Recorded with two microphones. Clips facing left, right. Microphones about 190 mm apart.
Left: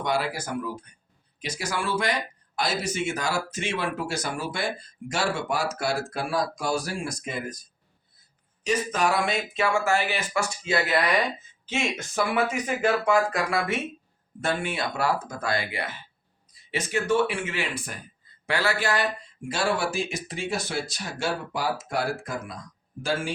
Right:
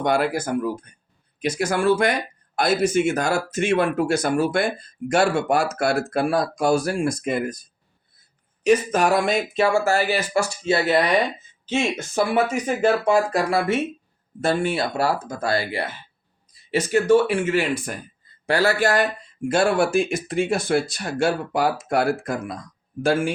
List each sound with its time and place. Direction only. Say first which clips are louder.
0.0 s speech: right 6 dB; 50° right (ahead or behind)
8.6 s speech: right 7 dB; 55° right (ahead or behind)